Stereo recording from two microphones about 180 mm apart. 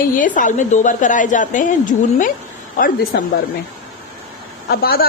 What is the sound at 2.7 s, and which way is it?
Speech, 50° left (ahead or behind).